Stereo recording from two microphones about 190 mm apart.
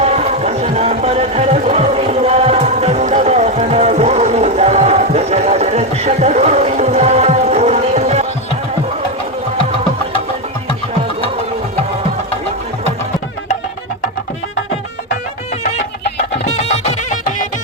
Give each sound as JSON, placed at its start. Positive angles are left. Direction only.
{"t": 0.0, "sound": "music", "side_deg": -35}
{"t": 16.6, "sound": "music", "side_deg": 35}